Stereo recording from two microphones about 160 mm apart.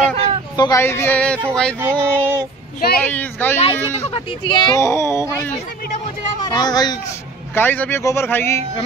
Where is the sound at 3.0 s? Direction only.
10° left (ahead or behind).